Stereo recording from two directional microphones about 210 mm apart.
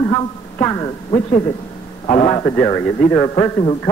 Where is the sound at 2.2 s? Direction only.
20° left (ahead or behind).